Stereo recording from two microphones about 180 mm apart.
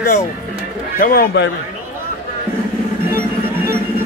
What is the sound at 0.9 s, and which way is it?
Speech, 50° left (ahead or behind).